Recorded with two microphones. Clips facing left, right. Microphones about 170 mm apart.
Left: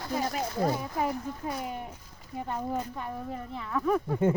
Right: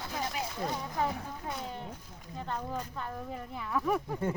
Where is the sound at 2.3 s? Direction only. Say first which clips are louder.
Left 5 dB; 10° left (ahead or behind).